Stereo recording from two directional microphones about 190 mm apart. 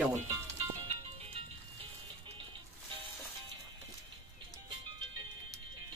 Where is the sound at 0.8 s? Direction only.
30° right (ahead or behind).